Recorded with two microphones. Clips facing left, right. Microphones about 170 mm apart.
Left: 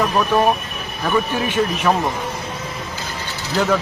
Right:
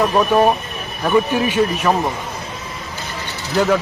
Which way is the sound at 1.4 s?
Centre (ahead or behind).